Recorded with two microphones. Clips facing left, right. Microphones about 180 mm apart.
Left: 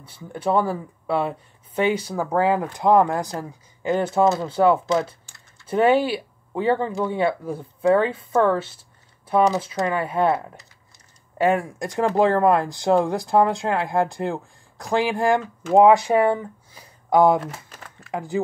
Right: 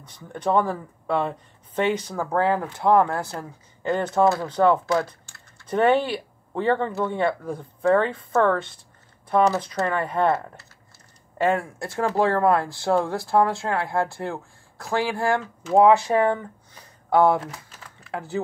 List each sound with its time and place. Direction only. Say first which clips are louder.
0.0 s speech: left 1 dB; 10° left (ahead or behind)
3.9 s speech: left 2 dB; 5° left (ahead or behind)
4.2 s speech: even; 20° left (ahead or behind)
4.5 s speech: left 1 dB; 10° left (ahead or behind)